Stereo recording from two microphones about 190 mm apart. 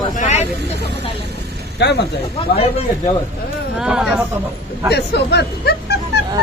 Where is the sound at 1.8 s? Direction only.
60° left (ahead or behind).